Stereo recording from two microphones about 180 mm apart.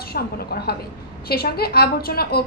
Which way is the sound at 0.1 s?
60° left (ahead or behind).